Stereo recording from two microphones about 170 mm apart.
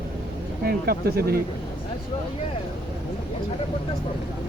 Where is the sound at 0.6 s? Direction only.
60° right (ahead or behind).